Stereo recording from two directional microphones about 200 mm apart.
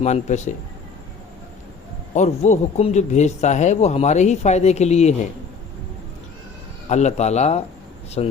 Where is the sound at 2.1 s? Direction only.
35° left (ahead or behind).